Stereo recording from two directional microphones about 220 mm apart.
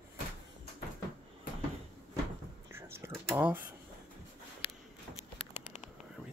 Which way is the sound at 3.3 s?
10° right (ahead or behind).